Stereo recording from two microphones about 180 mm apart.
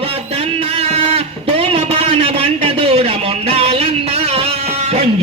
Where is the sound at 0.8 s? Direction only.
35° right (ahead or behind).